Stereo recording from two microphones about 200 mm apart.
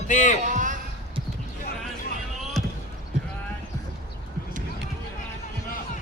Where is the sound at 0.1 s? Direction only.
40° left (ahead or behind).